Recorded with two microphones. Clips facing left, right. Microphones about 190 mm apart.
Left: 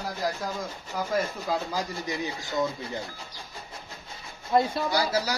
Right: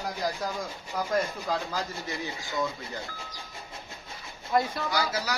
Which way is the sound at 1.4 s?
15° left (ahead or behind).